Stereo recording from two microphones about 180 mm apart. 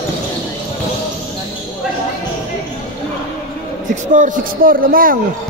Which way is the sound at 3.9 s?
45° right (ahead or behind).